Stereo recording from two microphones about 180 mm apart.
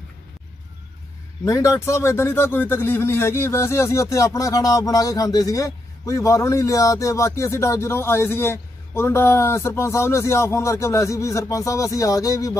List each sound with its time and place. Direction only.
1.4 s a man's voice: 20° left (ahead or behind)